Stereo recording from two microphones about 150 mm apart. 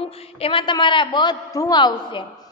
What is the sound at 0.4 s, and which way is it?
A woman's voice, 35° left (ahead or behind).